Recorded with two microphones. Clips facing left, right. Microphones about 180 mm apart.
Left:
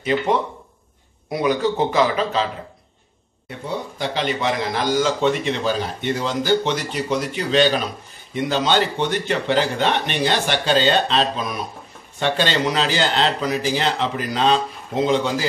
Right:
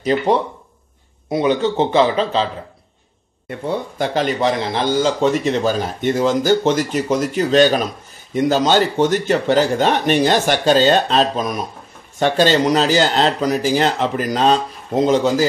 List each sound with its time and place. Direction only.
1.3 s a man's voice: 25° right (ahead or behind)
3.4 s a man's voice: 50° right (ahead or behind)